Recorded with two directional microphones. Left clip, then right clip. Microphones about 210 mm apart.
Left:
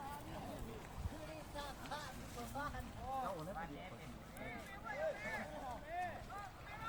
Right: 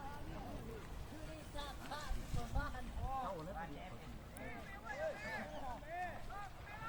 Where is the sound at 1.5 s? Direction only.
20° left (ahead or behind).